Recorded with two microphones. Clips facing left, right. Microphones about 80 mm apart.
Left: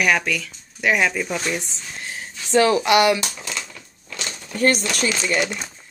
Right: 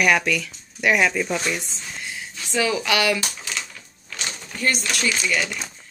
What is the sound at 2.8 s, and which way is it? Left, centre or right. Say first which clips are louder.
Speech: left 5 dB; left.